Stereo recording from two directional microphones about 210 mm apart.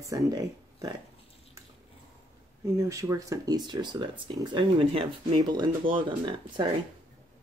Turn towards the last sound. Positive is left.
turn(degrees=-25)  # may be behind; listen again after turning